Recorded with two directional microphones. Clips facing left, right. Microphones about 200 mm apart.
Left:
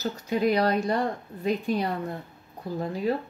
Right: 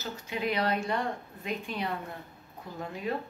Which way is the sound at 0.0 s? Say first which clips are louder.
Left 8 dB; 40° left (ahead or behind).